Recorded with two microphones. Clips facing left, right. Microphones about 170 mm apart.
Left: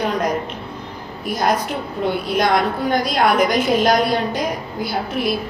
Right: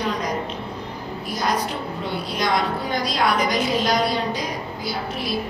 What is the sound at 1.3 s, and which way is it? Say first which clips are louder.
A woman's voice: left 5 dB; 50° left (ahead or behind).